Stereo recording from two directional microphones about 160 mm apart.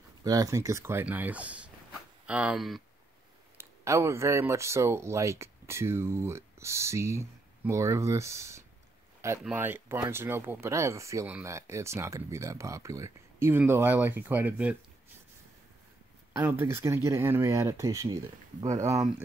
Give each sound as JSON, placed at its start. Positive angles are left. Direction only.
{"t": 0.2, "sound": "speech", "side_deg": -20}
{"t": 3.5, "sound": "speech", "side_deg": -20}
{"t": 16.3, "sound": "speech", "side_deg": -15}